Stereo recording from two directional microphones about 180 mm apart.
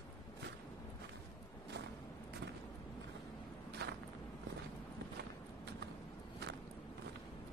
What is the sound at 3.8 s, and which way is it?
Walk, 65° right (ahead or behind).